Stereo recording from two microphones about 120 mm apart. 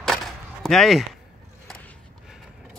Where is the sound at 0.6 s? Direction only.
Centre (ahead or behind).